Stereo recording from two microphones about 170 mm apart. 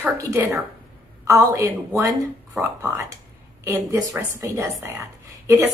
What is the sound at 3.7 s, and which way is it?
A woman's voice, 20° right (ahead or behind).